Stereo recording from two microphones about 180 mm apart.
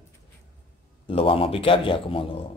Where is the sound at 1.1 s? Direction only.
30° left (ahead or behind).